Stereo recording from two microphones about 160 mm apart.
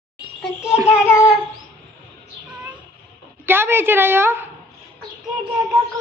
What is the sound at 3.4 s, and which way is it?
A woman's voice, 15° right (ahead or behind).